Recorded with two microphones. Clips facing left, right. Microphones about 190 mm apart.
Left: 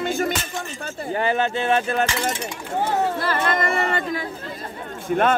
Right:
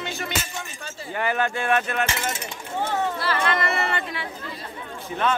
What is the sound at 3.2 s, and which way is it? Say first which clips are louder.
Speech: left 2 dB; 45° left (ahead or behind).